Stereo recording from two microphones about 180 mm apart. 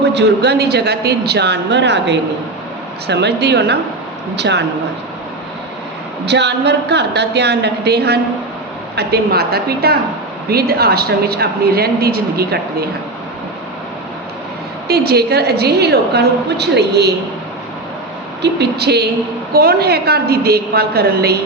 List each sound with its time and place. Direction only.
0.0 s speech: 70° right (ahead or behind)
6.2 s a woman's voice: 70° right (ahead or behind)
14.8 s a woman's voice: 60° right (ahead or behind)
18.4 s a woman's voice: 65° right (ahead or behind)